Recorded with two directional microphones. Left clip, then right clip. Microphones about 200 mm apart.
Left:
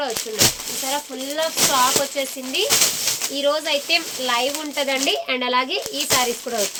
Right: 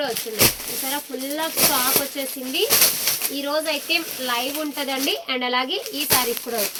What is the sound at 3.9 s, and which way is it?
Speech, 35° left (ahead or behind).